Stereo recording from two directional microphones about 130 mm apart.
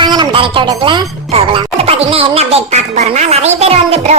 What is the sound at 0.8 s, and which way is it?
Speech, 40° right (ahead or behind).